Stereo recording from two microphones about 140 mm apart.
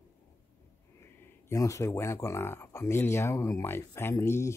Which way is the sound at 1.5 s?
20° left (ahead or behind).